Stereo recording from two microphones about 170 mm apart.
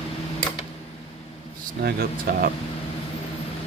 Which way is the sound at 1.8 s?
65° right (ahead or behind).